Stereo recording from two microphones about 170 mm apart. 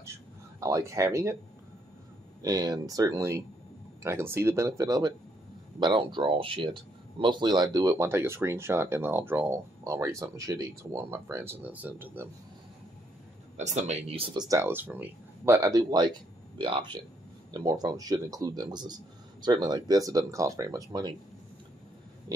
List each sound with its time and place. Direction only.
0.6 s speech: 20° right (ahead or behind)
2.4 s speech: 20° right (ahead or behind)
13.6 s speech: 40° right (ahead or behind); by 21.1 s 20° right (ahead or behind)